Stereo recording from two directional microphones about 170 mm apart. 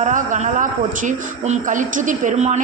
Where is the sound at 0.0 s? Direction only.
45° right (ahead or behind).